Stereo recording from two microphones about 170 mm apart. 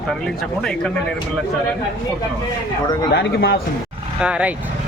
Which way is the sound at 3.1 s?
70° left (ahead or behind).